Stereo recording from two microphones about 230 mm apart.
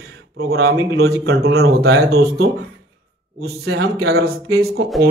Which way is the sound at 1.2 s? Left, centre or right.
Right.